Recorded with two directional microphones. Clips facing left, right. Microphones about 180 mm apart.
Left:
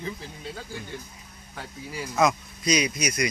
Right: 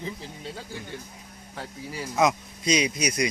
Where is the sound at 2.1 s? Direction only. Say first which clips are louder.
Even; 10° right (ahead or behind).